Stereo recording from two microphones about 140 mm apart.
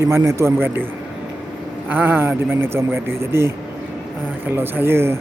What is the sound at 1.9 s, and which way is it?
Speech, 15° right (ahead or behind).